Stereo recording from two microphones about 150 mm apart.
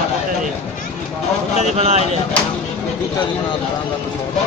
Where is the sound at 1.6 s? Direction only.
45° right (ahead or behind).